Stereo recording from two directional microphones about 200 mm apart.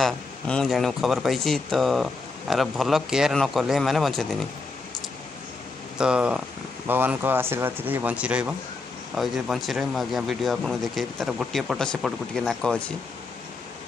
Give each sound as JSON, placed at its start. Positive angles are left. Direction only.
{"t": 0.0, "sound": "speech", "side_deg": 0}
{"t": 5.9, "sound": "speech", "side_deg": -5}